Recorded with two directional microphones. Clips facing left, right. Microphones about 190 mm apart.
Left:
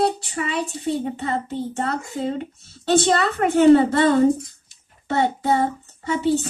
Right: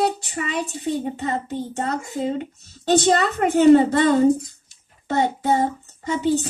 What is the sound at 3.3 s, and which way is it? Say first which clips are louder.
Speech: even; 15° right (ahead or behind).